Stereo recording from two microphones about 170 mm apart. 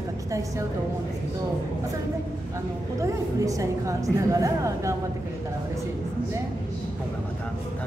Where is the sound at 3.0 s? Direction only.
20° right (ahead or behind).